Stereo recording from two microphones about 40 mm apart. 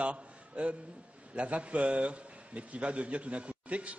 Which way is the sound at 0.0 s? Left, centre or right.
Right.